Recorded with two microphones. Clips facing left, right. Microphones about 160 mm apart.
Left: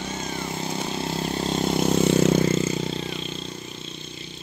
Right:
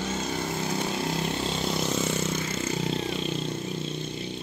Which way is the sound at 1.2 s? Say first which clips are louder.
Left 4 dB; 40° left (ahead or behind).